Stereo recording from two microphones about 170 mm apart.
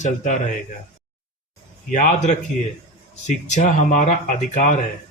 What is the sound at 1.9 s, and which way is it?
Speech, 45° left (ahead or behind).